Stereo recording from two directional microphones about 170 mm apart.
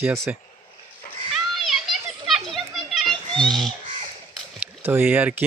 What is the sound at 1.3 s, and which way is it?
Children playing, centre (ahead or behind).